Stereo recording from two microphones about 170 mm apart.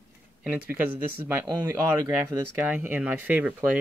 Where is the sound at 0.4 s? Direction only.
10° right (ahead or behind).